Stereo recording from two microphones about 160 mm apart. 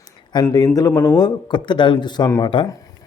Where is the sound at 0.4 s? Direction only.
20° left (ahead or behind).